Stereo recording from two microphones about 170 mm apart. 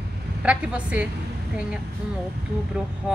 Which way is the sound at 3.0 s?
5° right (ahead or behind).